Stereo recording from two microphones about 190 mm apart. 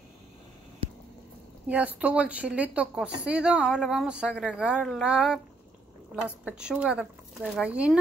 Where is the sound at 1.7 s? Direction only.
10° right (ahead or behind).